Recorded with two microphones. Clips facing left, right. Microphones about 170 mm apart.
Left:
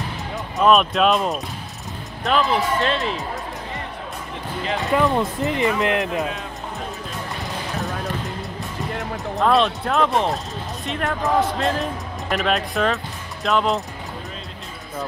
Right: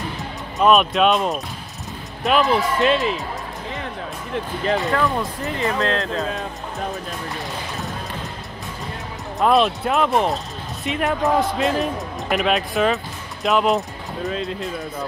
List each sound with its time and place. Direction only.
0.6 s speech: centre (ahead or behind)
2.2 s speech: 15° right (ahead or behind)
4.9 s speech: 20° left (ahead or behind)
9.4 s speech: centre (ahead or behind)
11.1 s speech: 15° right (ahead or behind)
11.6 s speech: 5° right (ahead or behind)